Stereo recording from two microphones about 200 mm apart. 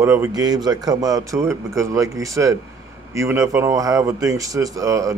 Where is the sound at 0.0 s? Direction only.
15° right (ahead or behind).